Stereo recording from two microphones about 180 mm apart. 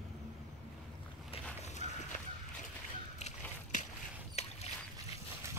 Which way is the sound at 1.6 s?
40° left (ahead or behind).